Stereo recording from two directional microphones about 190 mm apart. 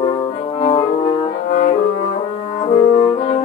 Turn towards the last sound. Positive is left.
turn(degrees=30)  # may be behind; listen again after turning